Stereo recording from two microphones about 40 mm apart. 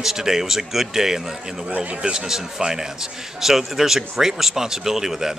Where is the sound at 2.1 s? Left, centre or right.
Centre.